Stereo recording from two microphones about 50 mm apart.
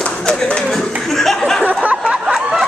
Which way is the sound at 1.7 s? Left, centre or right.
Right.